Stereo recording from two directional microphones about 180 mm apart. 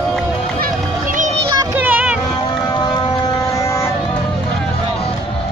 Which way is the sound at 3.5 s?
15° left (ahead or behind).